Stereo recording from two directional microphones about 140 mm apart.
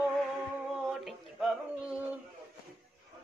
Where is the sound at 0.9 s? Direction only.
Centre (ahead or behind).